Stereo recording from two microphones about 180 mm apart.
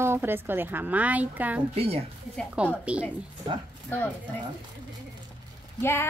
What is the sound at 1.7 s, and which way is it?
Speech, 35° right (ahead or behind).